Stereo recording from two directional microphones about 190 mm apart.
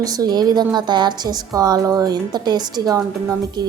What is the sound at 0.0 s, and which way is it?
A woman's voice, 20° right (ahead or behind).